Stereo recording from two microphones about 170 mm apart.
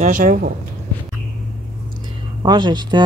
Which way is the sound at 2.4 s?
25° right (ahead or behind).